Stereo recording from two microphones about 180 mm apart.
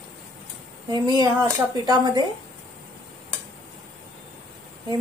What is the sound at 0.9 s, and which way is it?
A woman's voice, 20° right (ahead or behind).